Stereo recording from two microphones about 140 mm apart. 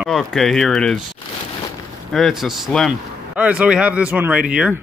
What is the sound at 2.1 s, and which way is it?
Speech, centre (ahead or behind).